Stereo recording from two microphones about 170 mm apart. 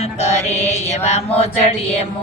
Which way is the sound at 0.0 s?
40° left (ahead or behind).